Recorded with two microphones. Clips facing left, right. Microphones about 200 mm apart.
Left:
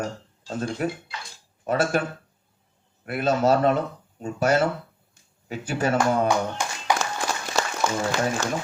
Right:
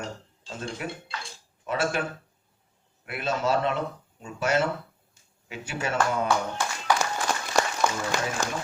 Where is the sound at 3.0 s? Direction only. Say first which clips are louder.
Left 6 dB; 40° left (ahead or behind).